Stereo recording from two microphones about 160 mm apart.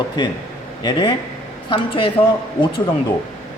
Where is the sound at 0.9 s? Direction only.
30° left (ahead or behind).